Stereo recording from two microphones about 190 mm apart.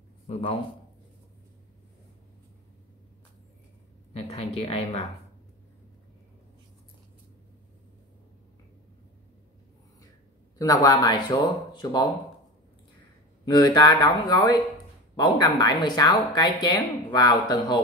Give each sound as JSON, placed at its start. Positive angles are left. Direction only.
{"t": 4.1, "sound": "speech", "side_deg": 30}
{"t": 10.6, "sound": "speech", "side_deg": 20}
{"t": 13.5, "sound": "speech", "side_deg": 20}